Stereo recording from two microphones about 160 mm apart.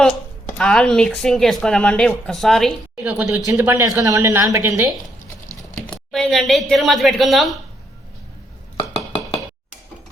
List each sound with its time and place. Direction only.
0.6 s a woman's voice: 5° left (ahead or behind); by 4.9 s 20° right (ahead or behind)
5.9 s speech: 5° left (ahead or behind)
8.8 s dishes: 40° left (ahead or behind)